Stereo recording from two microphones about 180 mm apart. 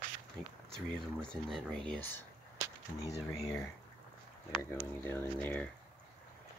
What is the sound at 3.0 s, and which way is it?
Speech, 20° left (ahead or behind).